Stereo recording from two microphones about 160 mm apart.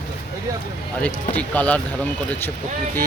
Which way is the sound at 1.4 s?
10° left (ahead or behind).